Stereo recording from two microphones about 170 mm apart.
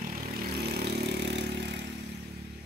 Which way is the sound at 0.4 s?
70° right (ahead or behind).